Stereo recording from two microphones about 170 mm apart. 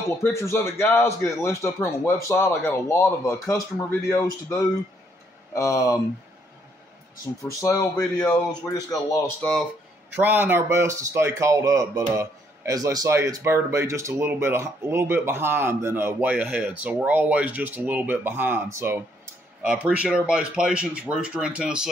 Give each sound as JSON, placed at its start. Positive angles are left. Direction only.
{"t": 0.2, "sound": "a man's voice", "side_deg": 15}
{"t": 7.6, "sound": "speech", "side_deg": 25}
{"t": 9.4, "sound": "speech", "side_deg": 5}
{"t": 10.2, "sound": "speech", "side_deg": -10}